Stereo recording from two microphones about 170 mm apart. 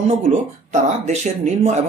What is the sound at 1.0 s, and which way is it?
Speech, 40° right (ahead or behind).